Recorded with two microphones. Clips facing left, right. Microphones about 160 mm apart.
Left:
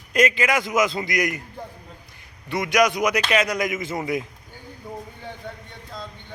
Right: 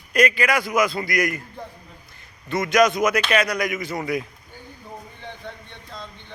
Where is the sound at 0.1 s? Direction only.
20° left (ahead or behind).